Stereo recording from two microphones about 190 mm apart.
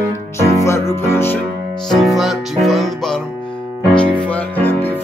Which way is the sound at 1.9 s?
Centre (ahead or behind).